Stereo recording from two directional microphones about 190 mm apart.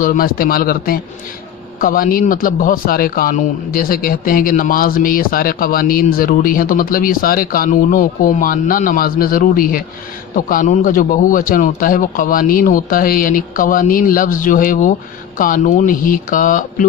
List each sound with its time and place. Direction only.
0.0 s speech: 50° left (ahead or behind)